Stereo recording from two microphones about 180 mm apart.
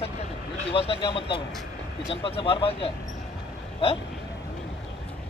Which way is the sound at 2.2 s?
30° left (ahead or behind).